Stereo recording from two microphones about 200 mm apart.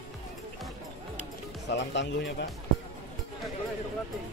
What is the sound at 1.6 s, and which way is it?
Music, 60° left (ahead or behind).